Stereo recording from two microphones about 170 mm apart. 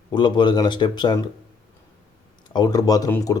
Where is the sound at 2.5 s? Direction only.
25° left (ahead or behind).